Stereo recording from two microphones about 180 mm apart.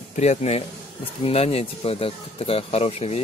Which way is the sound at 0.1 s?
40° left (ahead or behind).